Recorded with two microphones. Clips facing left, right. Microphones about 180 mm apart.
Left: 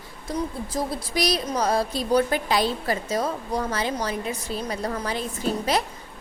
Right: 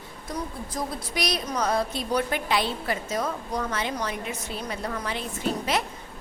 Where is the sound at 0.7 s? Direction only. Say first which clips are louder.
Left 4 dB; 35° left (ahead or behind).